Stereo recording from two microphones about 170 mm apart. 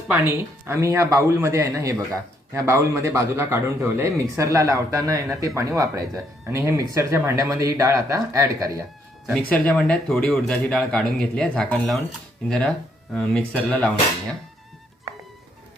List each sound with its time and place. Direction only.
0.1 s a man's voice: 15° right (ahead or behind)
9.5 s speech: 5° left (ahead or behind)